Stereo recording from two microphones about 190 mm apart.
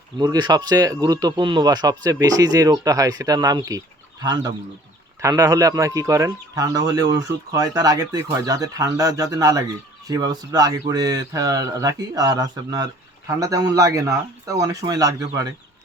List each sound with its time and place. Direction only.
0.2 s speech: 20° right (ahead or behind)